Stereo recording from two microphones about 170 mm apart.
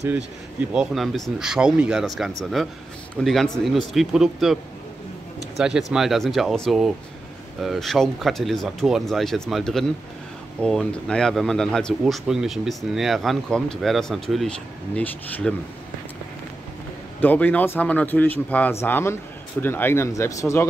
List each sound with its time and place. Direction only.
0.7 s speech: centre (ahead or behind)
5.4 s a sound: 5° right (ahead or behind)
5.9 s speech: centre (ahead or behind)
17.2 s speech: 10° left (ahead or behind)